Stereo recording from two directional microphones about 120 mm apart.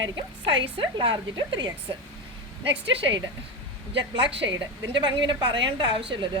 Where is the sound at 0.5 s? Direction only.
45° right (ahead or behind).